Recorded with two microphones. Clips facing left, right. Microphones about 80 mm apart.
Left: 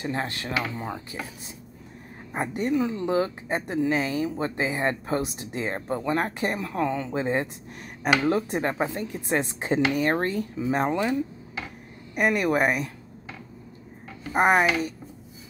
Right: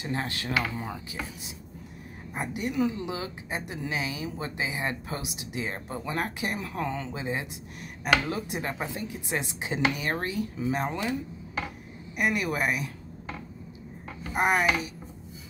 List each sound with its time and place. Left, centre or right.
0.1 s speech: left
2.3 s speech: left
12.2 s speech: left
14.3 s speech: left